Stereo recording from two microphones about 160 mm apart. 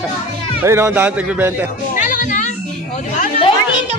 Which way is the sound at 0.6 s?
15° right (ahead or behind).